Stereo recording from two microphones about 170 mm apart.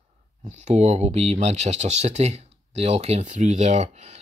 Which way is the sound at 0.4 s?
40° right (ahead or behind).